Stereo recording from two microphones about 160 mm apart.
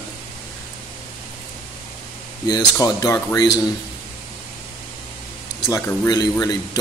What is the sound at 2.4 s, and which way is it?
Speech, 25° left (ahead or behind).